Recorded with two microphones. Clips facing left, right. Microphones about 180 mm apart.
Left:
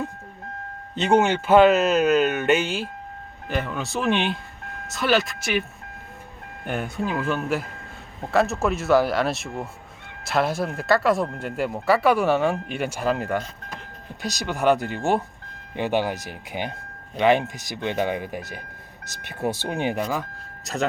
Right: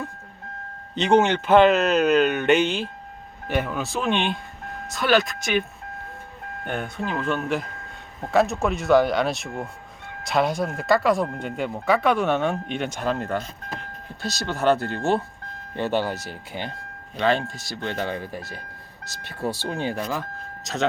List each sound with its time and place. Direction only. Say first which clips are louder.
0.9 s speech: right 1 dB; 10° left (ahead or behind)
3.4 s speech: right 2 dB; 5° right (ahead or behind)
6.7 s speech: left 2 dB; 10° left (ahead or behind)